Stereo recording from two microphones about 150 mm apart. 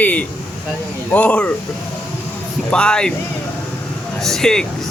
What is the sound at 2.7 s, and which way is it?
Speech, 5° left (ahead or behind).